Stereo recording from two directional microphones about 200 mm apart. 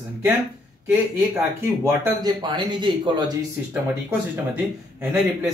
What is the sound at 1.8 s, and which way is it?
Speech, 15° right (ahead or behind).